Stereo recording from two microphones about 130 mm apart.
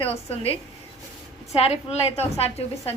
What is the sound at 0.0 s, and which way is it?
Speech, 50° left (ahead or behind).